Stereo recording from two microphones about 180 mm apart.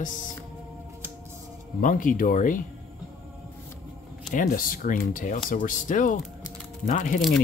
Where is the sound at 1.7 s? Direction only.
50° left (ahead or behind).